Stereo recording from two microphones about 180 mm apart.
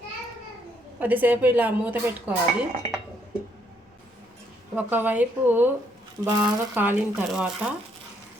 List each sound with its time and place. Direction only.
0.9 s dishes: 10° right (ahead or behind)
4.7 s dishes: 10° right (ahead or behind)
6.4 s speech: 10° right (ahead or behind)